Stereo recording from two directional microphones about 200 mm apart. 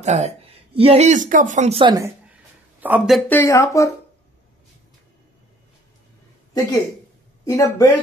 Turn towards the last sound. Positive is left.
turn(degrees=15)  # may be behind; listen again after turning